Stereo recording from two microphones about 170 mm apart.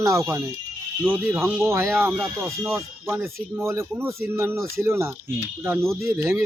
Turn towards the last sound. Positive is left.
turn(degrees=-15)  # may be behind; listen again after turning